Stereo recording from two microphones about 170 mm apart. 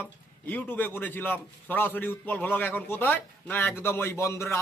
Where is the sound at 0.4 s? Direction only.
10° left (ahead or behind).